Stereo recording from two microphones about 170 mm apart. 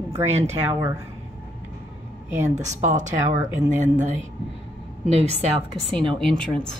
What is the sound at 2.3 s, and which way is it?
Speech, 40° right (ahead or behind).